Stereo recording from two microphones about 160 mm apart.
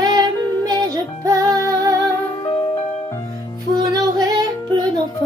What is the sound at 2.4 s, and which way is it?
Music, 30° left (ahead or behind).